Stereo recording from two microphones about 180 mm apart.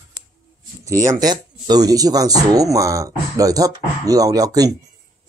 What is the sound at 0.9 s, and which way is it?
Speech, 20° right (ahead or behind).